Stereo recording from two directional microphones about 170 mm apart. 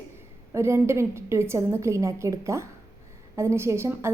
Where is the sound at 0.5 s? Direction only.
15° right (ahead or behind).